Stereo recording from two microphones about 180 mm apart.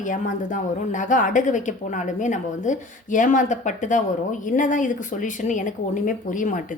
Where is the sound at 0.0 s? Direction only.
45° left (ahead or behind).